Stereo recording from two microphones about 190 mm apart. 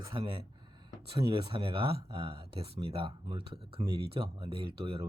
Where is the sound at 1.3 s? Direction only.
25° right (ahead or behind).